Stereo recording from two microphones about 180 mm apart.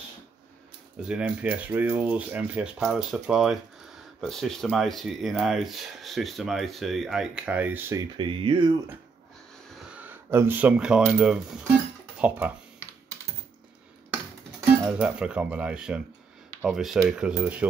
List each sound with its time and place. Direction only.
1.0 s speech: 5° right (ahead or behind)
8.2 s speech: 30° right (ahead or behind)
9.7 s speech: 5° right (ahead or behind)
14.9 s speech: 5° right (ahead or behind)